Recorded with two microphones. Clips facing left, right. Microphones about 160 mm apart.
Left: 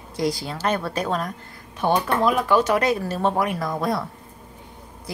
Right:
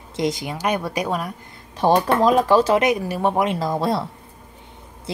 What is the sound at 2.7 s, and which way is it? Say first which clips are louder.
A woman's voice: right 3 dB; 15° right (ahead or behind).